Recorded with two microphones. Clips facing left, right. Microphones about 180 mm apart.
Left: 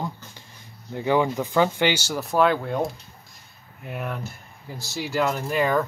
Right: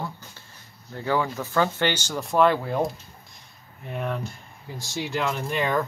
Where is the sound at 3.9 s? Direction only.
5° left (ahead or behind).